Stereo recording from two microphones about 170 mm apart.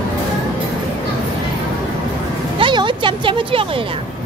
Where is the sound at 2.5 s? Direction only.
30° right (ahead or behind).